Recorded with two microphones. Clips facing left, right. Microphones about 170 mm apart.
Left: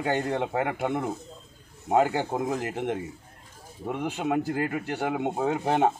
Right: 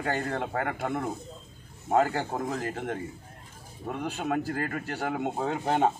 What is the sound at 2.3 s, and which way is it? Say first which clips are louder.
Speech: left 3 dB; 15° left (ahead or behind).